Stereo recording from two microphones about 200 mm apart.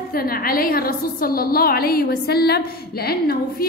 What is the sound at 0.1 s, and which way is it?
A woman's voice, 45° left (ahead or behind).